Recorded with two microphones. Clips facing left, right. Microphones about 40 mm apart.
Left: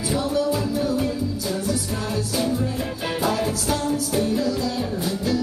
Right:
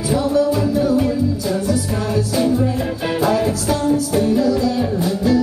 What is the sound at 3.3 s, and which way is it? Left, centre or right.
Music, centre.